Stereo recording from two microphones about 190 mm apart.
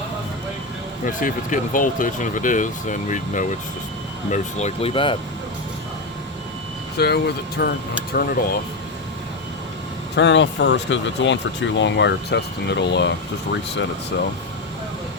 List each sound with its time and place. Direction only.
1.0 s speech: 45° left (ahead or behind); by 5.1 s 30° left (ahead or behind)
6.9 s speech: 60° left (ahead or behind)
10.2 s speech: 70° left (ahead or behind)